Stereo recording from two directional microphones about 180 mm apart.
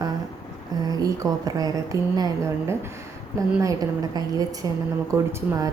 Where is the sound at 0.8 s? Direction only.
20° right (ahead or behind).